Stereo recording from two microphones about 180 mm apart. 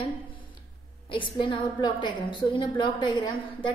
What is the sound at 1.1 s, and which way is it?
A woman's voice, 30° left (ahead or behind).